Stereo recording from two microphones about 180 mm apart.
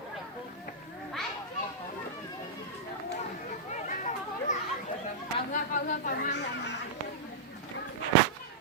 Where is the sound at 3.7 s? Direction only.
40° left (ahead or behind); by 6.8 s 75° left (ahead or behind).